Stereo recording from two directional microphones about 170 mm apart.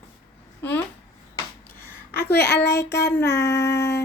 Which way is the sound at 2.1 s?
75° left (ahead or behind).